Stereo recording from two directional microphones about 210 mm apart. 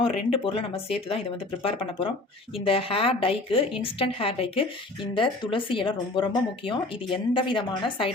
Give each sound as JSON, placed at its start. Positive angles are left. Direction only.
{"t": 0.0, "sound": "a woman's voice", "side_deg": 25}